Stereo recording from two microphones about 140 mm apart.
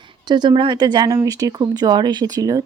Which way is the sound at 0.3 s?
30° right (ahead or behind).